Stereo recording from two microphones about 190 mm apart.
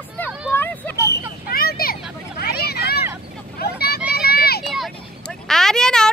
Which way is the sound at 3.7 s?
55° left (ahead or behind).